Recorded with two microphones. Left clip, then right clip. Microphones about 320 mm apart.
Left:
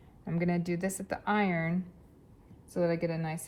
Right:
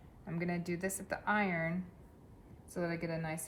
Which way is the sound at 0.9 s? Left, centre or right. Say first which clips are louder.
Left 4 dB; centre.